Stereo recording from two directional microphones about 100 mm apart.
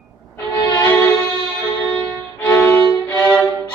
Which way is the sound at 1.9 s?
20° left (ahead or behind).